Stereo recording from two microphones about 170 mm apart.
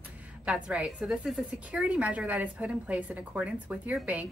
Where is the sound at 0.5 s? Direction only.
5° right (ahead or behind).